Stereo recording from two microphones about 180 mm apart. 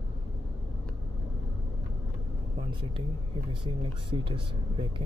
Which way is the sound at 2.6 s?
25° right (ahead or behind).